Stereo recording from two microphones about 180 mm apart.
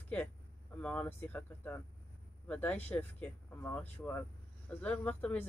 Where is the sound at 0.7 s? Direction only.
10° left (ahead or behind).